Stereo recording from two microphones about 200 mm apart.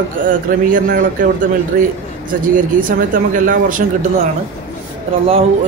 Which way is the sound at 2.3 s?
45° right (ahead or behind).